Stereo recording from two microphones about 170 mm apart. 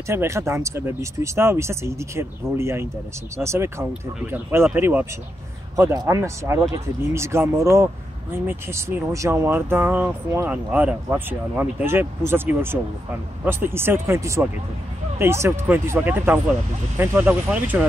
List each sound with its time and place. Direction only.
0.1 s speech: 15° right (ahead or behind)